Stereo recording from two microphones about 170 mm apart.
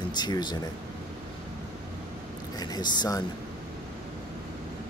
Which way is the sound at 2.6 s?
25° left (ahead or behind).